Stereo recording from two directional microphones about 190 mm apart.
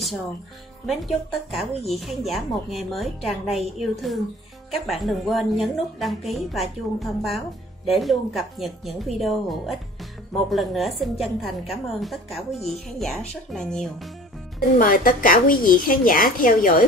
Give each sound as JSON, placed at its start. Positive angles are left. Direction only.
{"t": 0.8, "sound": "speech", "side_deg": 0}
{"t": 14.8, "sound": "a woman's voice", "side_deg": 45}